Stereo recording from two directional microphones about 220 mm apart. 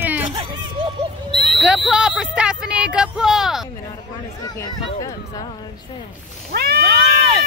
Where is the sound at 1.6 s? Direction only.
5° right (ahead or behind).